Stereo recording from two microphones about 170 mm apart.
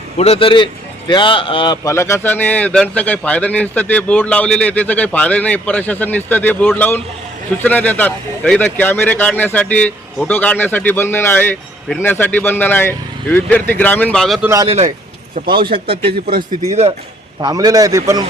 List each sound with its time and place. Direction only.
0.2 s a man's voice: 35° left (ahead or behind); by 14.4 s centre (ahead or behind)
14.4 s a man's voice: 20° right (ahead or behind)
14.7 s a man's voice: 40° right (ahead or behind)
15.4 s a man's voice: 30° right (ahead or behind)
17.4 s a man's voice: 25° right (ahead or behind)